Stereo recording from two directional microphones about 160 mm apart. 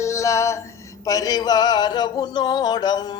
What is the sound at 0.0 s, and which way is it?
Music, 20° left (ahead or behind).